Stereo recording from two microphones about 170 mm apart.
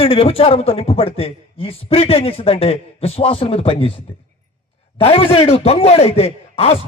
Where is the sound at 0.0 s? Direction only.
35° left (ahead or behind).